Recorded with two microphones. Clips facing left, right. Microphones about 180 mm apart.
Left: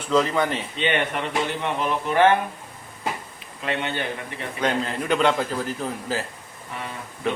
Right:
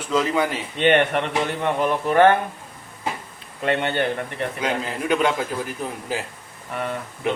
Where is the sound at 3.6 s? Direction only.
60° right (ahead or behind).